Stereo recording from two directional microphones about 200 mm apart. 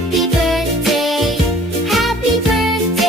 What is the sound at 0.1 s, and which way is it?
Music, centre (ahead or behind).